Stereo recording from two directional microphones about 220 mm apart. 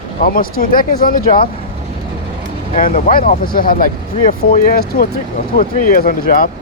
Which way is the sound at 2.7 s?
35° left (ahead or behind).